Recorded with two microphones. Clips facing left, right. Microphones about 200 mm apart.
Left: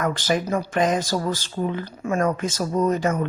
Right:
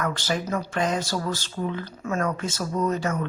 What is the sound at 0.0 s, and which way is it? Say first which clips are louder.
Speech: left 4 dB; 15° left (ahead or behind).